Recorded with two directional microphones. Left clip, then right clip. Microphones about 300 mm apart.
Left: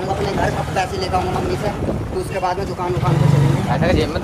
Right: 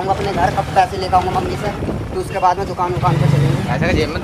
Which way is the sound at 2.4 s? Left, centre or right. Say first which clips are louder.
Right 8 dB; centre.